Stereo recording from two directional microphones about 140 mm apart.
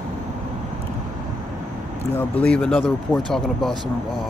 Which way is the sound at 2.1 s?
10° left (ahead or behind).